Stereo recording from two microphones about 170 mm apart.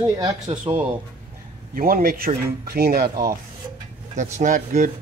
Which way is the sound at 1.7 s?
60° right (ahead or behind).